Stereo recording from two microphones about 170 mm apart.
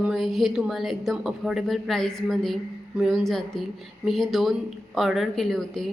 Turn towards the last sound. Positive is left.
turn(degrees=0)  # may be behind; listen again after turning